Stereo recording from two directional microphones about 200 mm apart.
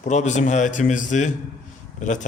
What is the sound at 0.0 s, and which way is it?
Speech, 35° left (ahead or behind).